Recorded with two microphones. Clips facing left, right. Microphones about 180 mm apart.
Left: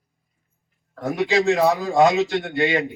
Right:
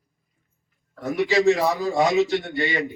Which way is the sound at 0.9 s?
55° left (ahead or behind).